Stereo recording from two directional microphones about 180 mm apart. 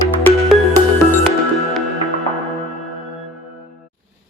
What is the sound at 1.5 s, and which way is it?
Music, centre (ahead or behind).